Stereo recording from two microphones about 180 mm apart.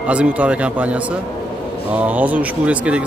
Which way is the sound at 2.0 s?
10° right (ahead or behind).